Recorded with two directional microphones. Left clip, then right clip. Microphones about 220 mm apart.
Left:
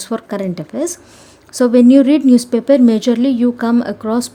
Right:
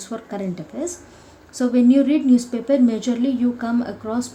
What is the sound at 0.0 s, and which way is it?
A woman's voice, 50° left (ahead or behind).